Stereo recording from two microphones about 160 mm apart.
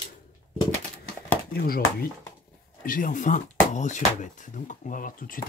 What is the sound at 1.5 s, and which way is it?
Speech, 70° left (ahead or behind).